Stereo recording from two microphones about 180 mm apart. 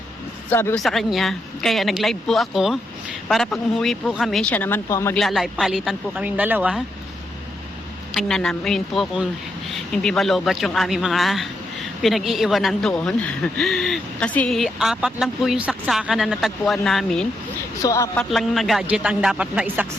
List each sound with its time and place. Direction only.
0.5 s speech: 10° left (ahead or behind)
0.8 s speech: centre (ahead or behind)
5.1 s speech: centre (ahead or behind)
8.1 s speech: centre (ahead or behind)
17.8 s speech: 15° left (ahead or behind)
18.2 s speech: centre (ahead or behind)